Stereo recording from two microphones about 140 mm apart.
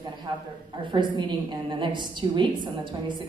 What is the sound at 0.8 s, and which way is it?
A woman's voice, 35° right (ahead or behind).